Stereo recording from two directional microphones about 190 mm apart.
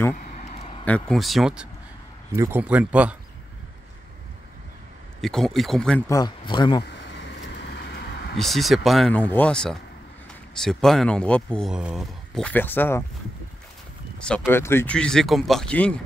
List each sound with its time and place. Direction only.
0.1 s a sound: 40° left (ahead or behind)
0.8 s speech: 5° left (ahead or behind)
5.2 s speech: centre (ahead or behind)
6.0 s speech: 20° left (ahead or behind)
6.8 s vehicle: 70° left (ahead or behind)
8.4 s speech: centre (ahead or behind)
14.2 s speech: 5° left (ahead or behind)